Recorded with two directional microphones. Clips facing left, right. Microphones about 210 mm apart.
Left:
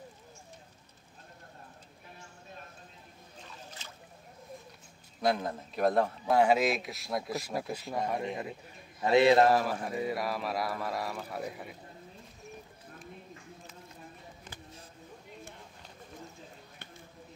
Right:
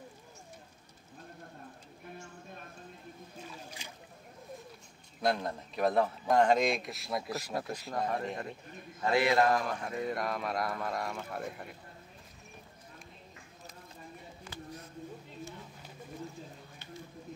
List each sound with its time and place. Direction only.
3.3 s boat: 10° right (ahead or behind)
5.2 s a man's voice: centre (ahead or behind)
9.0 s a man's voice: 20° left (ahead or behind)
9.5 s a man's voice: 5° left (ahead or behind)